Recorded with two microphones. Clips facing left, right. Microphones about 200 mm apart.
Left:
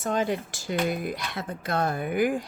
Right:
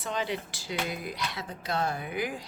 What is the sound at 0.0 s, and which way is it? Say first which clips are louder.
Speech: left 6 dB; 45° left (ahead or behind).